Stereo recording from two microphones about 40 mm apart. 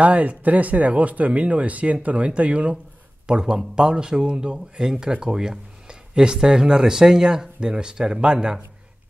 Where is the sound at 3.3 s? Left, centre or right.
Right.